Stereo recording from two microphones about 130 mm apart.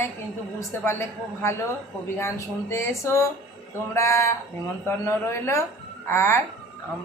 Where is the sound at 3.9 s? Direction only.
20° left (ahead or behind).